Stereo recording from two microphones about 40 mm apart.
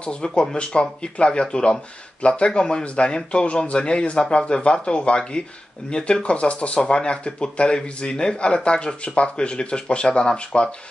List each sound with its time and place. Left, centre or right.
0.0 s speech: left